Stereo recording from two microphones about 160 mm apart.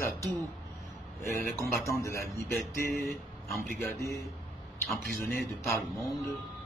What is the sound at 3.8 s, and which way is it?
Speech, 20° left (ahead or behind).